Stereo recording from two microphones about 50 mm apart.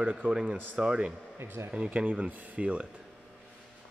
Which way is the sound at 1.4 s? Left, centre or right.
Right.